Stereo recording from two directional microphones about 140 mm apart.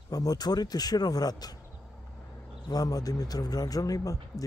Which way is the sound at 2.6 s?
25° left (ahead or behind).